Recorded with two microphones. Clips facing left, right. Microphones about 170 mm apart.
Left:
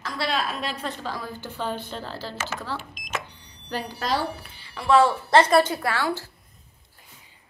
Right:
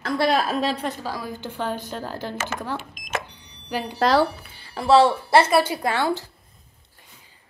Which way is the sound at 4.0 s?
90° right.